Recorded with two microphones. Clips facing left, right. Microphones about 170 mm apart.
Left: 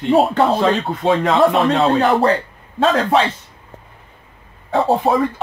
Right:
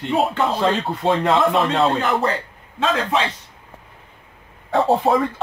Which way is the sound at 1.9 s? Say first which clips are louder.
Left 6 dB; 35° left (ahead or behind).